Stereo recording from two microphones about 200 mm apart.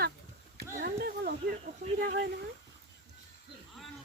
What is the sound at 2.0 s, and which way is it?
Speech, 50° right (ahead or behind).